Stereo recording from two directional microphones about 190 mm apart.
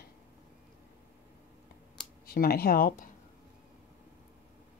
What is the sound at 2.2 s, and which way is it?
Speech, 50° left (ahead or behind).